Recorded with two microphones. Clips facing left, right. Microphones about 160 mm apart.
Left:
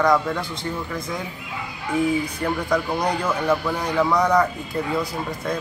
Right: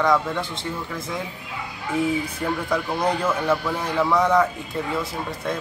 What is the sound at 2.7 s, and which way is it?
Speech, 5° right (ahead or behind).